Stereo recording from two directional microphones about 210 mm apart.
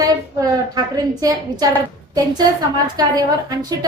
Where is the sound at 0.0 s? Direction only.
15° right (ahead or behind).